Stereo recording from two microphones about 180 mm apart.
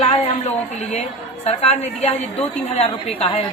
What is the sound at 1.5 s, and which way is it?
A woman's voice, 35° left (ahead or behind).